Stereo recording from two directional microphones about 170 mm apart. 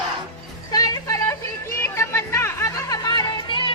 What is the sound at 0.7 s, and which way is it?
Vehicle, 20° left (ahead or behind).